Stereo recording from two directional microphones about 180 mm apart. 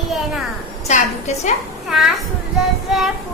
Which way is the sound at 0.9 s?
40° left (ahead or behind).